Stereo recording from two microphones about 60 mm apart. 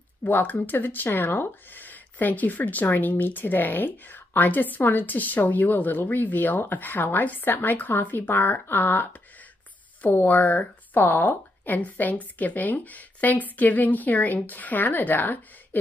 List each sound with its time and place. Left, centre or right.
0.2 s a woman's voice: left
10.0 s a woman's voice: left